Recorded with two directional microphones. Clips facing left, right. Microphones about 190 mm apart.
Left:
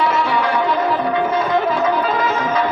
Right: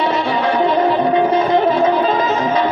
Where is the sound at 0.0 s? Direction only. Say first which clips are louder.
Right 1 dB; 25° right (ahead or behind).